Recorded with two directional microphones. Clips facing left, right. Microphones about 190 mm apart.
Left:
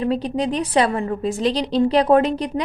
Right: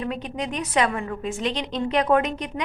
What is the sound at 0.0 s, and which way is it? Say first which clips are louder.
A woman's voice: left 8 dB; 35° left (ahead or behind).